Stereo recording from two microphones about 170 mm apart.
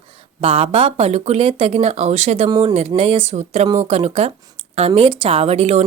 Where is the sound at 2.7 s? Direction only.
35° right (ahead or behind).